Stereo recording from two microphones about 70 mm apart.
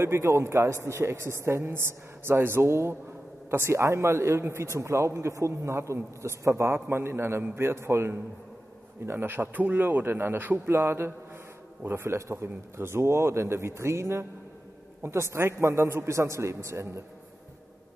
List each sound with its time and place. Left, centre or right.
0.0 s a man's voice: right